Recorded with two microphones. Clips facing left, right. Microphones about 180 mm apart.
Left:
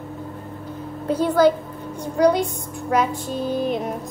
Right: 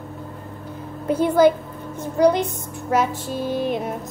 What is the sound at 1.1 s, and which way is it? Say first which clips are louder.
A woman's voice: right 1 dB; 10° right (ahead or behind).